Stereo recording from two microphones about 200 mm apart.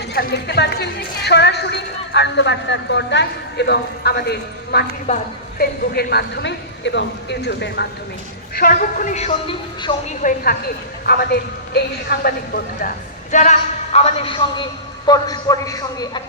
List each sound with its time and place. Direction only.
0.1 s a man's voice: 50° left (ahead or behind)
8.5 s speech: 45° left (ahead or behind); by 9.9 s 30° left (ahead or behind)
10.2 s a man's voice: 45° left (ahead or behind)
13.3 s a man's voice: 35° left (ahead or behind); by 16.2 s 20° left (ahead or behind)